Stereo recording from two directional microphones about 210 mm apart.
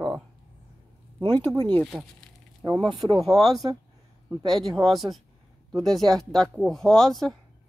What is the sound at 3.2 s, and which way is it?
Speech, centre (ahead or behind).